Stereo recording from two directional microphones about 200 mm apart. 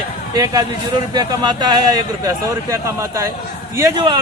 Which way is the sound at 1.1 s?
20° right (ahead or behind).